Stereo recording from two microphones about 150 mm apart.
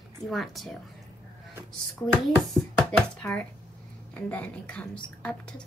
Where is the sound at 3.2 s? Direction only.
10° left (ahead or behind).